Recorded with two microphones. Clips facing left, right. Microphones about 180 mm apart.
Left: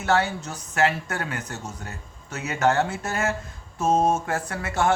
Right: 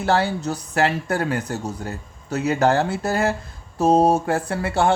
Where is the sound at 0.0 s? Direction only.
30° right (ahead or behind).